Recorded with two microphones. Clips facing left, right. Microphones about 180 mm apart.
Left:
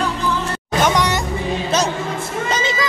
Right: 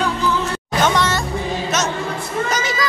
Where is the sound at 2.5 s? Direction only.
25° left (ahead or behind).